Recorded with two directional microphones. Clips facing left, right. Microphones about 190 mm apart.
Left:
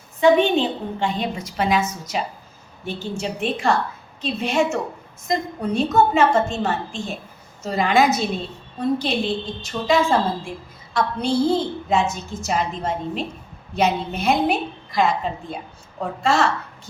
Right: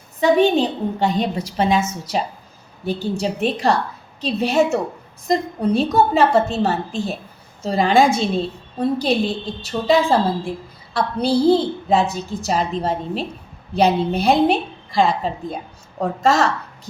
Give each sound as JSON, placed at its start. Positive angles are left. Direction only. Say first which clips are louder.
{"t": 0.2, "sound": "a woman's voice", "louder": "right 1 dB", "side_deg": -40}